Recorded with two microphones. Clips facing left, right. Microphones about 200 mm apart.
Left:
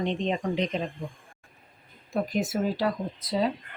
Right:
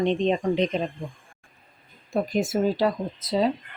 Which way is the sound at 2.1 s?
25° right (ahead or behind).